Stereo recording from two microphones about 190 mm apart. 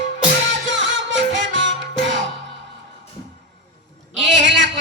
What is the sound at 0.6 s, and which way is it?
Music, 75° right (ahead or behind).